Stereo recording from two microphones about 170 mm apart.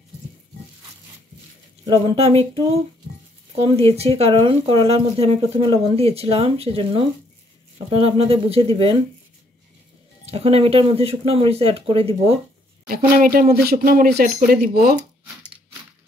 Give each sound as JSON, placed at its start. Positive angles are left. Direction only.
{"t": 1.9, "sound": "speech", "side_deg": -35}
{"t": 3.6, "sound": "speech", "side_deg": -35}
{"t": 10.3, "sound": "speech", "side_deg": -35}
{"t": 12.8, "sound": "speech", "side_deg": -60}